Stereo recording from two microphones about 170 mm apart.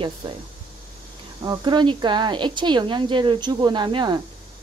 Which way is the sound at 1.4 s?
25° right (ahead or behind).